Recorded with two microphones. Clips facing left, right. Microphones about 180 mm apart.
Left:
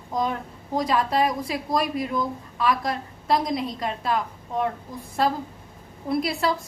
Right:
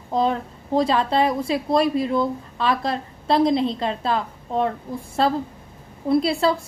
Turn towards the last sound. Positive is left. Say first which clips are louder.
# right 4 dB
turn(degrees=-25)  # may be behind; listen again after turning